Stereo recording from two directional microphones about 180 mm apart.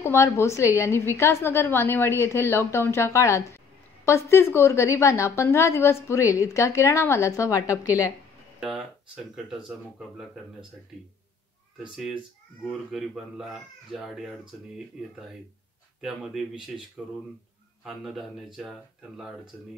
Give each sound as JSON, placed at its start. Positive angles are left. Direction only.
{"t": 0.0, "sound": "a woman's voice", "side_deg": 15}
{"t": 8.5, "sound": "speech", "side_deg": -5}
{"t": 12.6, "sound": "speech", "side_deg": 0}
{"t": 16.0, "sound": "speech", "side_deg": 0}
{"t": 17.8, "sound": "speech", "side_deg": 0}